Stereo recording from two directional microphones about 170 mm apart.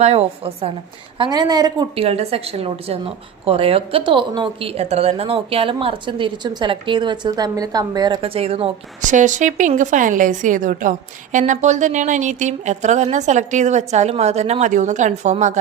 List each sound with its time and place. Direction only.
0.0 s a woman's voice: 35° right (ahead or behind)
1.2 s a woman's voice: 25° right (ahead or behind)
2.0 s a woman's voice: 35° right (ahead or behind)